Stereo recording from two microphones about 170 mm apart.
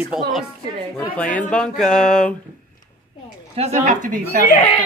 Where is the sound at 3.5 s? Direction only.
40° right (ahead or behind).